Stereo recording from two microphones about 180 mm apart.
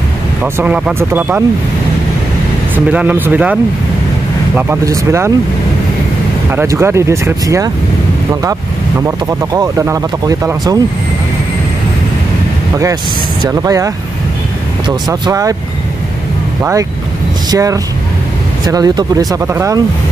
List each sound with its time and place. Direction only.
0.4 s speech: 5° right (ahead or behind)
2.7 s speech: 10° right (ahead or behind)
4.6 s speech: 15° right (ahead or behind)
6.5 s speech: 15° right (ahead or behind)
9.0 s speech: 15° right (ahead or behind)
13.5 s speech: 15° right (ahead or behind)
17.5 s speech: 20° right (ahead or behind)